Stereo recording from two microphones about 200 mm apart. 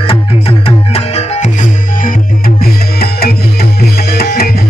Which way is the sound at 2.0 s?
45° left (ahead or behind).